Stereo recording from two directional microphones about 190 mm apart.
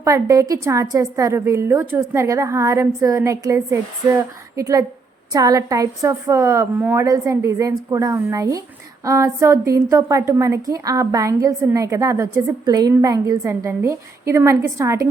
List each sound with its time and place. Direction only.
0.0 s a woman's voice: 20° right (ahead or behind)